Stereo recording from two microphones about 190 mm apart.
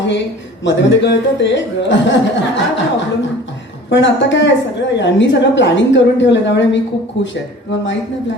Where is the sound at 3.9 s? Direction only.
70° left (ahead or behind).